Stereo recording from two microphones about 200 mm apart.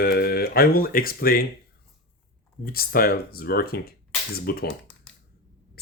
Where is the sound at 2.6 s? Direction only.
50° left (ahead or behind).